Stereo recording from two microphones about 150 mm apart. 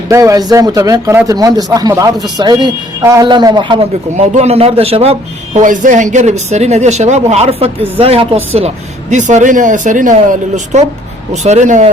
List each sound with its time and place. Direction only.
0.1 s a man's voice: 20° right (ahead or behind)
4.4 s a man's voice: 45° right (ahead or behind)
5.5 s speech: 60° right (ahead or behind); by 8.4 s 40° right (ahead or behind)
8.5 s speech: 50° right (ahead or behind)